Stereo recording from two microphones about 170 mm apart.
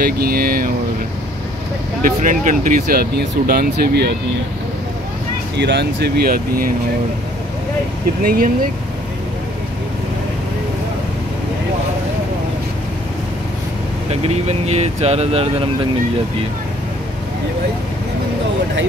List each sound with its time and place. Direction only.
0.0 s speech: 60° right (ahead or behind)
2.2 s speech: 50° right (ahead or behind); by 4.1 s 75° right (ahead or behind)
5.6 s speech: 90° right; by 6.7 s 60° right (ahead or behind)
8.2 s speech: 60° right (ahead or behind)
14.2 s speech: 40° right (ahead or behind)